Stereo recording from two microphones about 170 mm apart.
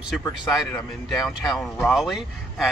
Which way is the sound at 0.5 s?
10° left (ahead or behind).